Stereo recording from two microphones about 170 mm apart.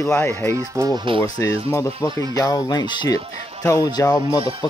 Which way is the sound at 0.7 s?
25° right (ahead or behind).